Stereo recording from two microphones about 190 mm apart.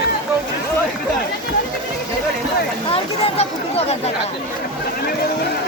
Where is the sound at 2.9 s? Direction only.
30° left (ahead or behind).